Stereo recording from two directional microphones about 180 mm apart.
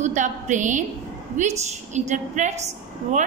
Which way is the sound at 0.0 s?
45° right (ahead or behind).